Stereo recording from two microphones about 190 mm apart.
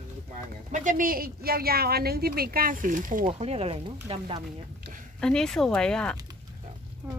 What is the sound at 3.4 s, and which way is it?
Speech, 30° right (ahead or behind).